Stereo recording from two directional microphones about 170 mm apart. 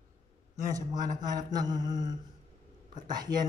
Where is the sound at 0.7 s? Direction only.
20° right (ahead or behind).